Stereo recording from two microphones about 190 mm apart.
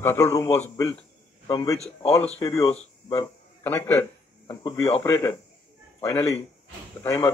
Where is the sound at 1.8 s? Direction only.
35° left (ahead or behind).